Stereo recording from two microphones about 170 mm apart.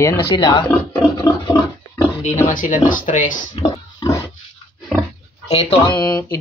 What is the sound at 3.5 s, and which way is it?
Speech, 25° left (ahead or behind).